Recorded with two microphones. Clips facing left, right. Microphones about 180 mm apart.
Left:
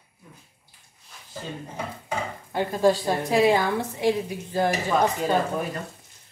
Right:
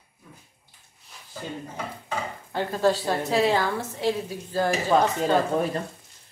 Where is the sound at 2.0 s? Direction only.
15° left (ahead or behind).